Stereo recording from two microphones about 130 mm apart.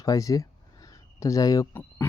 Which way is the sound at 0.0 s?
25° left (ahead or behind).